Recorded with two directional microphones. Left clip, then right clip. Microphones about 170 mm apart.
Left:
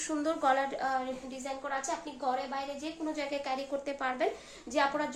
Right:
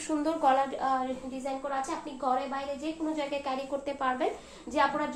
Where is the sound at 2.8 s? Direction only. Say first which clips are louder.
Right 3 dB; 35° left (ahead or behind).